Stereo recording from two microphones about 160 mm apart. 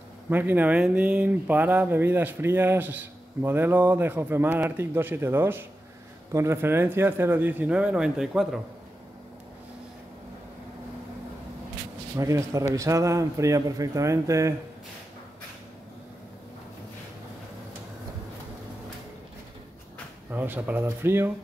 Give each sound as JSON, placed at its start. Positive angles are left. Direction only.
{"t": 0.3, "sound": "speech", "side_deg": -10}
{"t": 12.2, "sound": "speech", "side_deg": -20}
{"t": 20.2, "sound": "speech", "side_deg": -10}